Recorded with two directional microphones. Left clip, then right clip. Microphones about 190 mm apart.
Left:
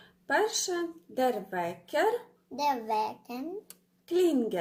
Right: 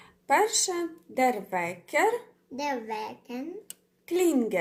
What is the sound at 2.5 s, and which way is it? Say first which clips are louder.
Speech: left 3 dB; 30° left (ahead or behind).